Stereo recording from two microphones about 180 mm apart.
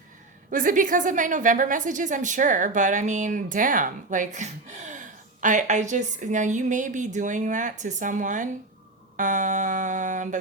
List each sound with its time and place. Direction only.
0.5 s a woman's voice: 45° right (ahead or behind)